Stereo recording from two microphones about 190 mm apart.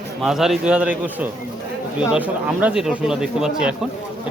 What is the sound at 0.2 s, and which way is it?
Speech, centre (ahead or behind).